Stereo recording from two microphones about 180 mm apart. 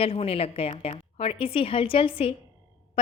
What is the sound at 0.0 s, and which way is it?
A woman's voice, 30° left (ahead or behind).